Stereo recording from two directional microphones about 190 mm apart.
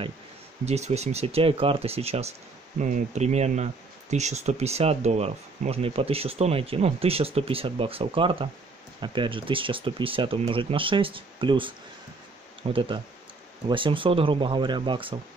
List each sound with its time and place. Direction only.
0.7 s speech: 35° right (ahead or behind)